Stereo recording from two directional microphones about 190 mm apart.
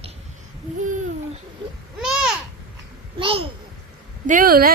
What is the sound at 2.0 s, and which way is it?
Babbling, 5° right (ahead or behind).